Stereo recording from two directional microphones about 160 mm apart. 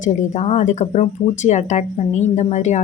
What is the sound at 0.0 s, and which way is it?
Speech, 45° left (ahead or behind).